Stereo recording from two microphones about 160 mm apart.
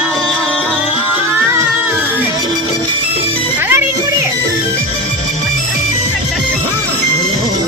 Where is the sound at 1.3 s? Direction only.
15° right (ahead or behind).